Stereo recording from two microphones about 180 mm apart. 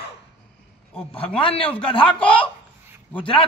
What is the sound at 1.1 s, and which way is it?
A man's voice, 30° left (ahead or behind).